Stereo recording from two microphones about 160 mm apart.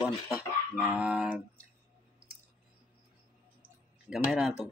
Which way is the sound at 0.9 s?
5° right (ahead or behind).